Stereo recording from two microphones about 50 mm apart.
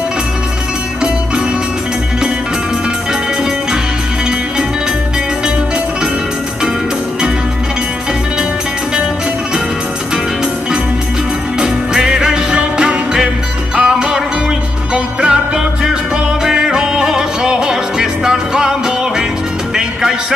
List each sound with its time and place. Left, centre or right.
11.6 s music: centre